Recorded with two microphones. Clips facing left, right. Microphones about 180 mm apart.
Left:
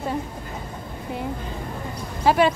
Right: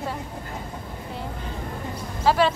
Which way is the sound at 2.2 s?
15° left (ahead or behind).